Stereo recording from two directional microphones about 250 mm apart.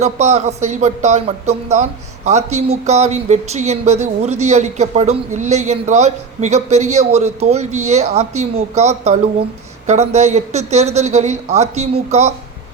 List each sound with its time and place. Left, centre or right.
0.0 s speech: right